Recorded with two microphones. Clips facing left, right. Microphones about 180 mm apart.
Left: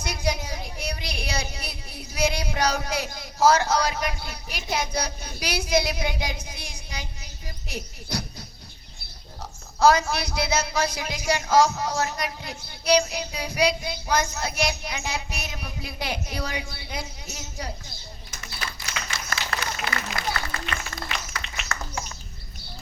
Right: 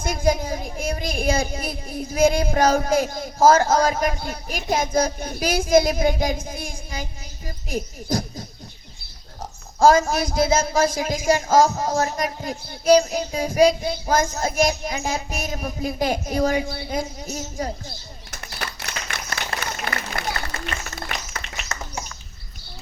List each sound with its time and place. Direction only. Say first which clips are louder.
0.0 s speech: right 7 dB; 50° right (ahead or behind)
9.8 s a woman's voice: right 4 dB; 45° right (ahead or behind)
18.3 s a sound: right 4 dB; 65° right (ahead or behind)
19.8 s run: right 2 dB; 50° right (ahead or behind)
21.7 s bird: even; 20° right (ahead or behind)